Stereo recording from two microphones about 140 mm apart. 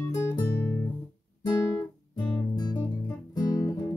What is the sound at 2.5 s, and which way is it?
Music, 30° left (ahead or behind).